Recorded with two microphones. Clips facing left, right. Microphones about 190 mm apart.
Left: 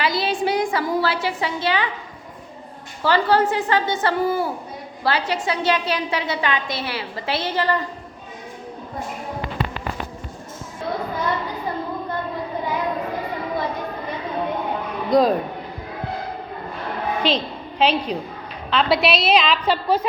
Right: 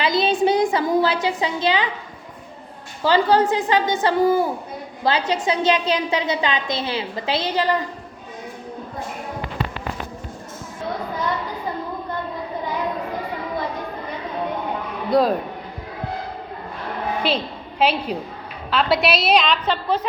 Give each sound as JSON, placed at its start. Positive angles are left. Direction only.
{"t": 0.0, "sound": "a sound", "side_deg": -20}
{"t": 3.0, "sound": "a woman's voice", "side_deg": -15}
{"t": 15.1, "sound": "a woman's voice", "side_deg": -5}
{"t": 17.2, "sound": "a woman's voice", "side_deg": -10}